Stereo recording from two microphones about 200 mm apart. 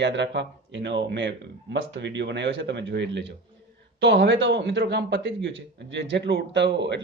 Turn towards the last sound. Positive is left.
turn(degrees=-60)  # may be behind; listen again after turning